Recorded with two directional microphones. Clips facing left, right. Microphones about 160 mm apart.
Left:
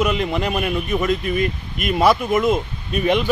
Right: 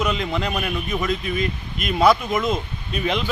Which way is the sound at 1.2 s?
55° left (ahead or behind).